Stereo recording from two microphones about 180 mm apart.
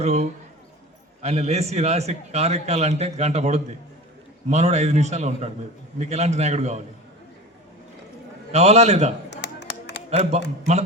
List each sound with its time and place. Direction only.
0.0 s a man's voice: 35° right (ahead or behind)
8.5 s a man's voice: 35° right (ahead or behind)
9.3 s a sound: 75° left (ahead or behind)
10.1 s a man's voice: 35° right (ahead or behind)